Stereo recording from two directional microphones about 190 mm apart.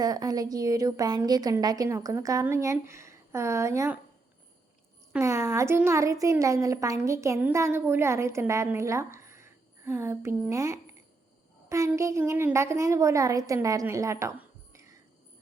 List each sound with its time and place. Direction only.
0.0 s a woman's voice: 20° right (ahead or behind)
5.1 s a woman's voice: 15° right (ahead or behind)